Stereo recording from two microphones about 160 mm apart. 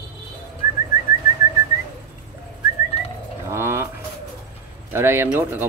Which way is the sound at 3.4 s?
15° right (ahead or behind).